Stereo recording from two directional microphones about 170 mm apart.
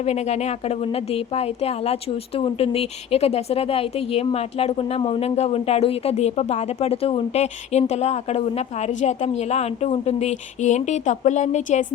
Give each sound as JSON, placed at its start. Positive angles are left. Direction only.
{"t": 0.0, "sound": "speech", "side_deg": 40}